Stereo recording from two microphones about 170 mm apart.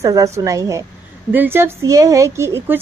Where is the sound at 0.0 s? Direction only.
20° right (ahead or behind).